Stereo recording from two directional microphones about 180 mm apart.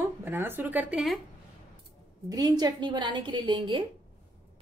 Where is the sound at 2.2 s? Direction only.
20° right (ahead or behind).